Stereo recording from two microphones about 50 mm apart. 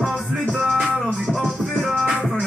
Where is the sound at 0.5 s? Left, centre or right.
Centre.